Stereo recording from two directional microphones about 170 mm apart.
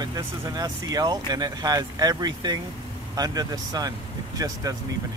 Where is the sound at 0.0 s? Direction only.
20° right (ahead or behind).